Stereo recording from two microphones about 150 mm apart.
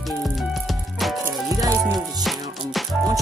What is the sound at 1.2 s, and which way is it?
Music, 20° right (ahead or behind).